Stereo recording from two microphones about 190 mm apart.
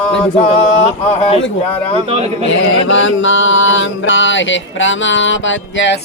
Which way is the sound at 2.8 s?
85° left.